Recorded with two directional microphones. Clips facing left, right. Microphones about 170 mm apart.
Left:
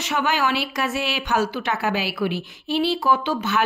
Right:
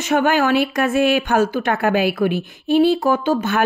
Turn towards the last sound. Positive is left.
turn(degrees=-50)  # may be behind; listen again after turning